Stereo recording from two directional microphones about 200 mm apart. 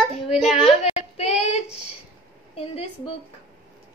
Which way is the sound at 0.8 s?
35° left (ahead or behind).